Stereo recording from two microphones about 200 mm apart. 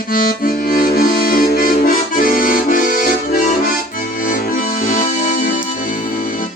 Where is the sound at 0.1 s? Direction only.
45° left (ahead or behind).